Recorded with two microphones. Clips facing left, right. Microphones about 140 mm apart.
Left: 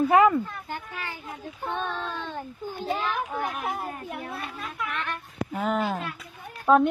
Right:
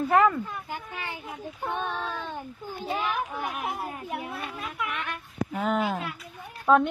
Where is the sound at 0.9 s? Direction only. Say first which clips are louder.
Even; 20° right (ahead or behind).